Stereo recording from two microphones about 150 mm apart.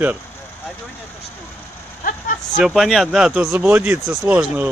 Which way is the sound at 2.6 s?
Centre (ahead or behind).